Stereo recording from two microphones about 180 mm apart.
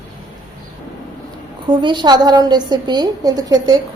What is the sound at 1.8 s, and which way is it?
A woman's voice, 25° right (ahead or behind).